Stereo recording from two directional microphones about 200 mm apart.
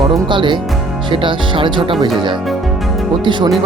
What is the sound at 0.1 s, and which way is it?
Speech, 25° right (ahead or behind).